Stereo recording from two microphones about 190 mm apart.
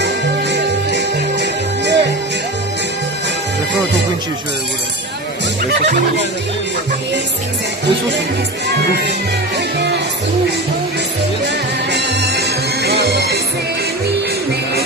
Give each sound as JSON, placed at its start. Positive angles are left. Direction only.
{"t": 0.0, "sound": "music", "side_deg": -65}
{"t": 8.6, "sound": "speech", "side_deg": -60}
{"t": 11.4, "sound": "music", "side_deg": -60}